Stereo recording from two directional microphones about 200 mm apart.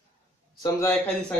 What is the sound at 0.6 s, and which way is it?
Speech, 10° left (ahead or behind).